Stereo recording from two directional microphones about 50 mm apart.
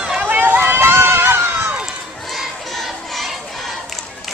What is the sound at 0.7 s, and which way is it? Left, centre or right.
Run, right.